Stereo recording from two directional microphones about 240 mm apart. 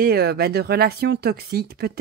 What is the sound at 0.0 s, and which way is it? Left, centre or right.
Speech, right.